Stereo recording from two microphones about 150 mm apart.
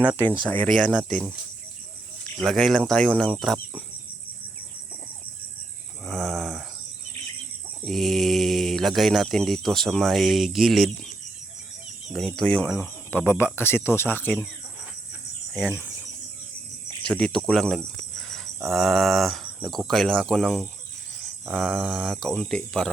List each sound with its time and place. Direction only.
0.5 s speech: 5° left (ahead or behind)
2.4 s speech: centre (ahead or behind)
6.1 s a sound: centre (ahead or behind)
7.9 s speech: centre (ahead or behind)
17.0 s speech: 5° left (ahead or behind)
18.2 s cricket: centre (ahead or behind)
19.5 s speech: centre (ahead or behind)